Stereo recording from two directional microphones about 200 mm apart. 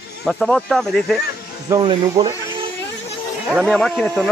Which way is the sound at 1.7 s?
20° right (ahead or behind).